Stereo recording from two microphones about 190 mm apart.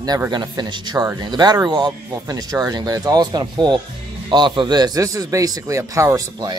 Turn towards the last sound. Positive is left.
turn(degrees=-15)  # may be behind; listen again after turning